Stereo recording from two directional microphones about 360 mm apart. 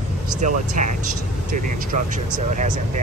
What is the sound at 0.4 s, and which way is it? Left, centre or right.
Speech, right.